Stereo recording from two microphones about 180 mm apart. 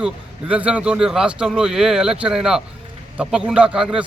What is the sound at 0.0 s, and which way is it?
Speech, 5° right (ahead or behind).